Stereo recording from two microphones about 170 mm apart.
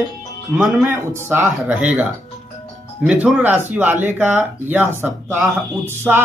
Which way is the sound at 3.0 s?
5° right (ahead or behind).